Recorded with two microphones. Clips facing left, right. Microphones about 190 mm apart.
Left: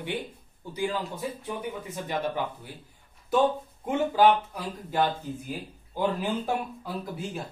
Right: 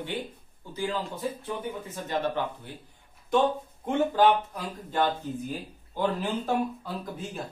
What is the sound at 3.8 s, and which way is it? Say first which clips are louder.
Speech: even; 10° left (ahead or behind).